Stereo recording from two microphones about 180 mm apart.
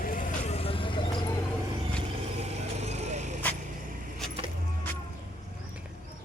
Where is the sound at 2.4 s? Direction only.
40° right (ahead or behind).